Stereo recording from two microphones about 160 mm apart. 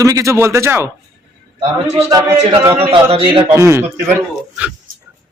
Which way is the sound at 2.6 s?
15° right (ahead or behind).